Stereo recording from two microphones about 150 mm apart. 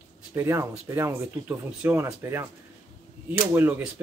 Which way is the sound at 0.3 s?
20° right (ahead or behind).